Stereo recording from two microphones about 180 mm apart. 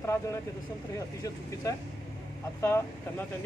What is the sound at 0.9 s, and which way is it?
Speech, 15° left (ahead or behind).